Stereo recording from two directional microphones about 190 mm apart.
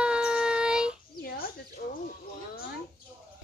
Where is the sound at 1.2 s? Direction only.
50° left (ahead or behind).